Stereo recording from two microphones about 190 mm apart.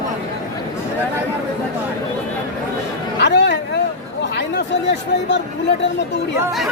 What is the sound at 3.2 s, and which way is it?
Speech, 65° left (ahead or behind).